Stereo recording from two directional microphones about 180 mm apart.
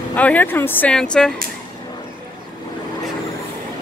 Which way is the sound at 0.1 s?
10° left (ahead or behind).